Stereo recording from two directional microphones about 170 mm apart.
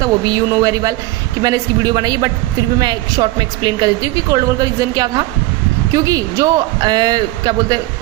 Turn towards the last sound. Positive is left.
turn(degrees=-25)  # may be behind; listen again after turning